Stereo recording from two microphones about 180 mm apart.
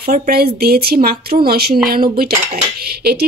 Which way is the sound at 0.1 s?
55° right (ahead or behind).